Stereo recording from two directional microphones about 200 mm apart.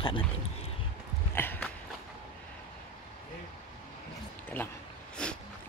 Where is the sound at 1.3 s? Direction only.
10° left (ahead or behind).